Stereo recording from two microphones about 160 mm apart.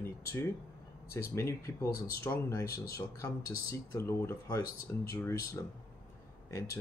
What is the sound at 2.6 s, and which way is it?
Speech, 70° left (ahead or behind).